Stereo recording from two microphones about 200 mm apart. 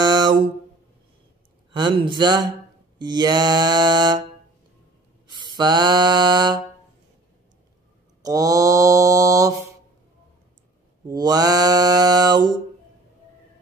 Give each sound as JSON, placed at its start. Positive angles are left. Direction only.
{"t": 0.0, "sound": "a sound", "side_deg": -20}
{"t": 1.7, "sound": "music", "side_deg": -25}
{"t": 5.3, "sound": "mantra", "side_deg": -20}
{"t": 8.2, "sound": "mantra", "side_deg": -15}
{"t": 11.1, "sound": "mantra", "side_deg": -20}